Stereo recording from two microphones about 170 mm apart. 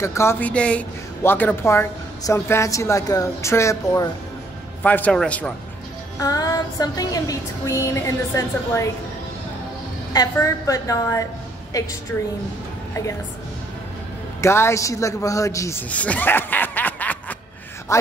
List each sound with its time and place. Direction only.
0.0 s speech: 15° left (ahead or behind)
6.1 s music: 20° left (ahead or behind)
10.1 s music: 20° left (ahead or behind)
14.4 s a man's voice: 15° left (ahead or behind)